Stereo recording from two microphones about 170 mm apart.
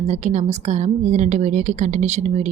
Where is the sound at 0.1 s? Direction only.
45° right (ahead or behind).